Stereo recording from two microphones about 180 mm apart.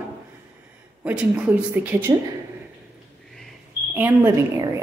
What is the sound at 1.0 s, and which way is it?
A woman's voice, 10° right (ahead or behind).